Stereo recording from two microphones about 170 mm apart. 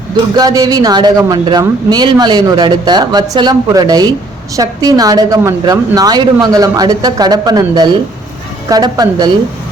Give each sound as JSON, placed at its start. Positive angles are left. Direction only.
{"t": 0.3, "sound": "speech", "side_deg": -20}